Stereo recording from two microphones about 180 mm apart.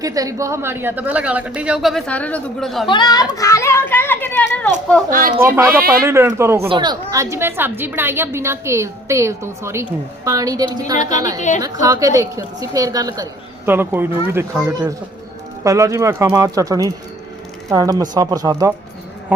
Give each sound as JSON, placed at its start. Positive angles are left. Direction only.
{"t": 0.0, "sound": "a woman's voice", "side_deg": -20}
{"t": 2.9, "sound": "a child's voice", "side_deg": 25}
{"t": 5.4, "sound": "a woman's voice", "side_deg": -15}
{"t": 6.7, "sound": "a woman's voice", "side_deg": -25}
{"t": 10.9, "sound": "a woman's voice", "side_deg": 45}
{"t": 11.6, "sound": "a woman's voice", "side_deg": -20}